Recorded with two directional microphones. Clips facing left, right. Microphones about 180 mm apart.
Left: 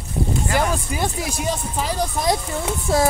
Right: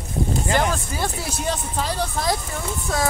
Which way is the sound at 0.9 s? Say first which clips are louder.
Left 2 dB; 10° left (ahead or behind).